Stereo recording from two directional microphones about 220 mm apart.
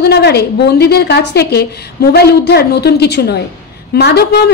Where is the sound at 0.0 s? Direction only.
50° left (ahead or behind).